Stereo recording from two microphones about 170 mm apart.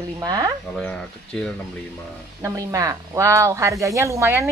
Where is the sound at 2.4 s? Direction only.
20° right (ahead or behind).